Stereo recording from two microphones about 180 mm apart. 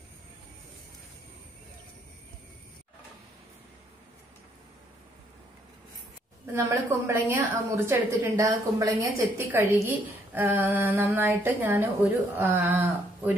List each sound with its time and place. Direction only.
6.4 s a woman's voice: 15° right (ahead or behind)